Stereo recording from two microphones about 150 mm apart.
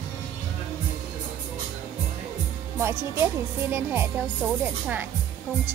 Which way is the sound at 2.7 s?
15° right (ahead or behind).